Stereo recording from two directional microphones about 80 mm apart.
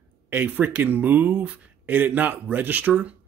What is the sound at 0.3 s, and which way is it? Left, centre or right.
Speech, right.